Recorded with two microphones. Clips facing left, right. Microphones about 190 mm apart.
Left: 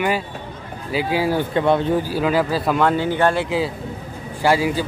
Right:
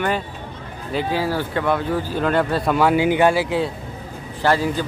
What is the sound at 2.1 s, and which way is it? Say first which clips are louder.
Speech: even; 5° left (ahead or behind).